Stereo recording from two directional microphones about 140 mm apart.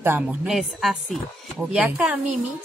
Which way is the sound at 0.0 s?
15° right (ahead or behind).